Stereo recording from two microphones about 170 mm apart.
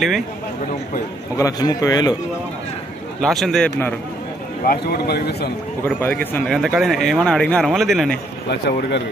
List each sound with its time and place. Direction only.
1.3 s a man's voice: 20° left (ahead or behind)
3.2 s speech: centre (ahead or behind)
4.6 s speech: 65° left (ahead or behind)
5.9 s speech: 10° left (ahead or behind)
8.5 s a man's voice: 80° left